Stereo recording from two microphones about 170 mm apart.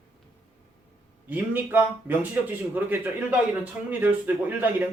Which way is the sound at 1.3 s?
10° right (ahead or behind).